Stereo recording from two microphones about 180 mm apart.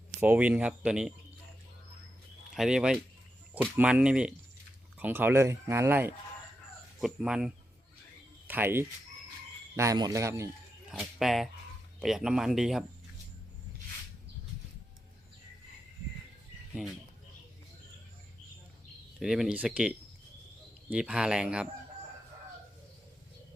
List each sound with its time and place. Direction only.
0.2 s speech: 10° right (ahead or behind)
2.6 s speech: 5° right (ahead or behind)
10.9 s speech: centre (ahead or behind)
19.2 s speech: 5° right (ahead or behind)
20.9 s speech: 5° right (ahead or behind)